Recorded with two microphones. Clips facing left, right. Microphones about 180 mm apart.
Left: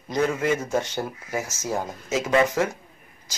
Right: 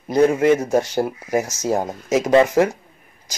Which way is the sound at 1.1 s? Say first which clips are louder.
Right 8 dB; 15° right (ahead or behind).